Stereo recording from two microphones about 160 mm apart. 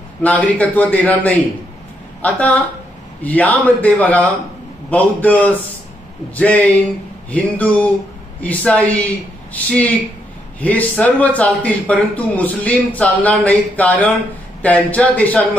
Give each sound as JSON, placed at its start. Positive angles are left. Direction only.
{"t": 0.2, "sound": "speech", "side_deg": 10}